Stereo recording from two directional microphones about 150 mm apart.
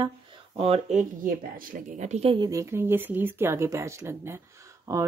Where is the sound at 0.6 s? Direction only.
40° right (ahead or behind).